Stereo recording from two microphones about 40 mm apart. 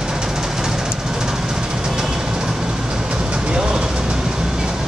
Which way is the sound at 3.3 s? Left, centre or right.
Right.